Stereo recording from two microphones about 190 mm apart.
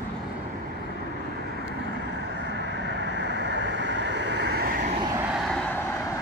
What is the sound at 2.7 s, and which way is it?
Vehicle, 65° right (ahead or behind).